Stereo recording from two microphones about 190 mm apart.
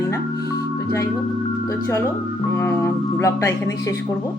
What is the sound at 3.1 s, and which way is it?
Speech, 15° left (ahead or behind).